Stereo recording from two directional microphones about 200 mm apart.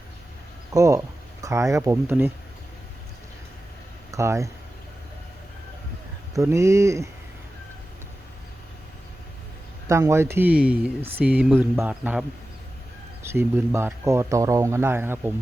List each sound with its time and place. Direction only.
0.7 s speech: 15° right (ahead or behind)
4.1 s speech: 15° right (ahead or behind)
6.3 s speech: 15° right (ahead or behind)
9.8 s speech: 15° right (ahead or behind)
13.2 s speech: 10° right (ahead or behind)